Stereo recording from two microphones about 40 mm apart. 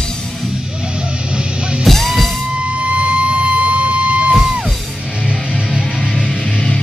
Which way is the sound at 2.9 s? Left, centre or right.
Right.